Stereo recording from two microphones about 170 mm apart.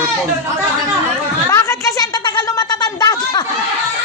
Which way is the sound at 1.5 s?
20° left (ahead or behind).